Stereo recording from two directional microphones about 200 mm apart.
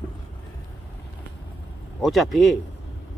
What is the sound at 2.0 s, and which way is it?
Speech, centre (ahead or behind).